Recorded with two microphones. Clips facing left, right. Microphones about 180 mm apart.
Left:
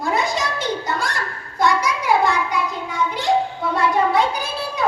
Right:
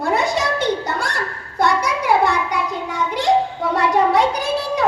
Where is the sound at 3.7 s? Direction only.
75° right (ahead or behind).